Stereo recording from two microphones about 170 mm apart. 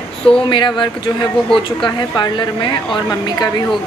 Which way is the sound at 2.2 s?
25° left (ahead or behind).